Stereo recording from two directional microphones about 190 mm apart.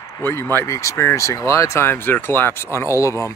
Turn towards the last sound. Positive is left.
turn(degrees=15)  # may be behind; listen again after turning